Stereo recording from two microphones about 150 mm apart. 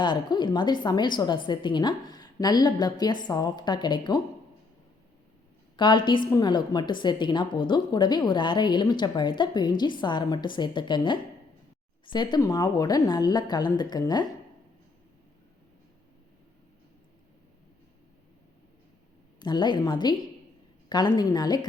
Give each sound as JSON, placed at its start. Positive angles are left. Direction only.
{"t": 0.0, "sound": "a woman's voice", "side_deg": 30}
{"t": 5.7, "sound": "a woman's voice", "side_deg": 30}
{"t": 19.4, "sound": "a woman's voice", "side_deg": 30}
{"t": 21.2, "sound": "a woman's voice", "side_deg": 25}